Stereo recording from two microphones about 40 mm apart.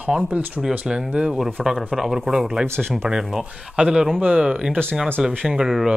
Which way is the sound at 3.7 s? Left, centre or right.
Right.